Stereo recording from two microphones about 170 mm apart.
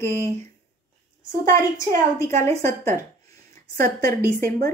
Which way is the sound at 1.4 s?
55° right (ahead or behind).